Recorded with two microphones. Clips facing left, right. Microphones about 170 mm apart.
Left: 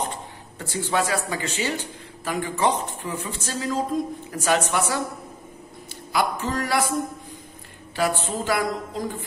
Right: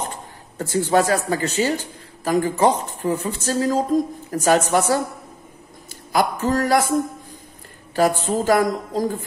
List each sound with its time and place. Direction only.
0.6 s speech: 45° right (ahead or behind)
6.1 s a man's voice: 45° right (ahead or behind)
7.9 s speech: 40° right (ahead or behind)